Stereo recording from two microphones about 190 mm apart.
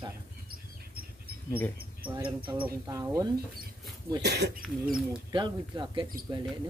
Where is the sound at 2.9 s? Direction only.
15° right (ahead or behind).